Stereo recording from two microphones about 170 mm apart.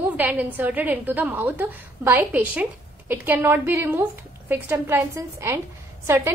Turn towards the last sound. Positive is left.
turn(degrees=-15)  # may be behind; listen again after turning